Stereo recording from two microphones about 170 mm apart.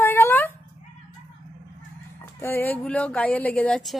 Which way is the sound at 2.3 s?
10° left (ahead or behind).